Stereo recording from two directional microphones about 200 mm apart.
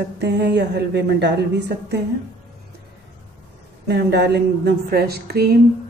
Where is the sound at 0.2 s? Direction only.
60° right (ahead or behind).